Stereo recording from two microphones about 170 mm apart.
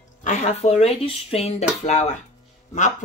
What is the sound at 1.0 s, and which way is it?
Dishes, 35° left (ahead or behind).